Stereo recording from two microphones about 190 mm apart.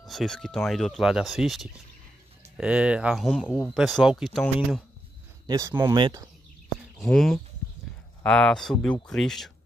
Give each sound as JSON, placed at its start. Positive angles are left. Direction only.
{"t": 0.0, "sound": "speech", "side_deg": 0}
{"t": 3.4, "sound": "speech", "side_deg": 10}
{"t": 3.7, "sound": "speech", "side_deg": 0}
{"t": 5.5, "sound": "speech", "side_deg": -15}
{"t": 7.0, "sound": "speech", "side_deg": 0}